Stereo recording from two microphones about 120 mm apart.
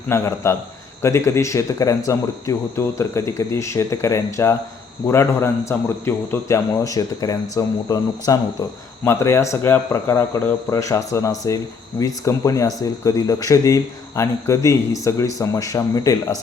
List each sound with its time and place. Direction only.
0.1 s speech: 25° left (ahead or behind)